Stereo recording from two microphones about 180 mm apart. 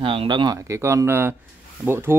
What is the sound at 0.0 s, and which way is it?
Speech, 30° right (ahead or behind).